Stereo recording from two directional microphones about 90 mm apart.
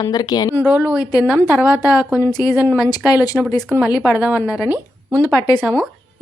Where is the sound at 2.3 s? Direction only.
45° left (ahead or behind).